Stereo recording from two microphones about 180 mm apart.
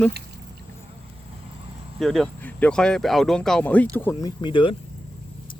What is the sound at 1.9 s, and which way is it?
Speech, centre (ahead or behind).